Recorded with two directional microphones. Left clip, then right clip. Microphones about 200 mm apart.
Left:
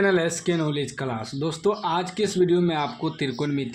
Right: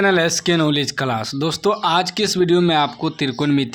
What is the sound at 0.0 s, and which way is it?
Speech, 20° right (ahead or behind).